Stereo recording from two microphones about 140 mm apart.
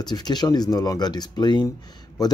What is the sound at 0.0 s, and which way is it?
Speech, 30° left (ahead or behind).